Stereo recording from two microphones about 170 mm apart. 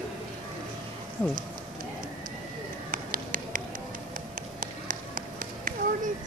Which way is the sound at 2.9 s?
55° right (ahead or behind).